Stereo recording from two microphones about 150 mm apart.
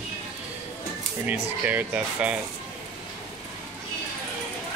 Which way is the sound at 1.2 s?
10° right (ahead or behind).